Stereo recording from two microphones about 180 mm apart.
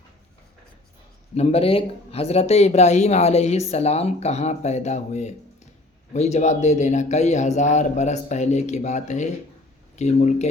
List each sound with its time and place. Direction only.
1.4 s a man's voice: 35° left (ahead or behind)